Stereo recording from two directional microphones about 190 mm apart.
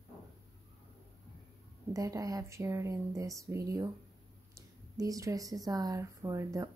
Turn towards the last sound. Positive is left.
turn(degrees=-15)  # may be behind; listen again after turning